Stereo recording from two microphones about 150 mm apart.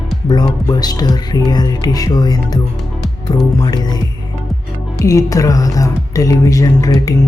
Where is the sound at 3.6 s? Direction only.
25° left (ahead or behind).